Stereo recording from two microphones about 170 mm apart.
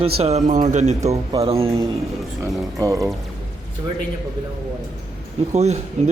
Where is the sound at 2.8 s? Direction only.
20° right (ahead or behind).